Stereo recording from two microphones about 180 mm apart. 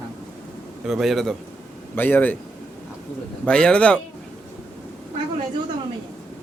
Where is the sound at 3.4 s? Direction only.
5° left (ahead or behind).